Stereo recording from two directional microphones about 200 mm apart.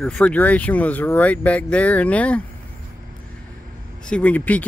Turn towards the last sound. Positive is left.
turn(degrees=10)  # may be behind; listen again after turning